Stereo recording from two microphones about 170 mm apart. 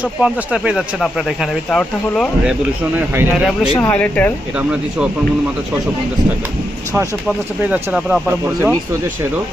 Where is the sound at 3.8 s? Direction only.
10° left (ahead or behind).